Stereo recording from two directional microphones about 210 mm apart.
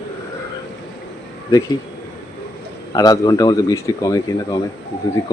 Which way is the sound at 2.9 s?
15° left (ahead or behind).